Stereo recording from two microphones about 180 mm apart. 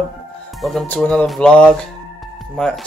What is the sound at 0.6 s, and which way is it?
Speech, centre (ahead or behind).